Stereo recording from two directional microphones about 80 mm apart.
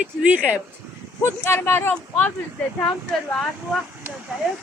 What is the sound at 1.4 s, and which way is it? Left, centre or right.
Speech, left.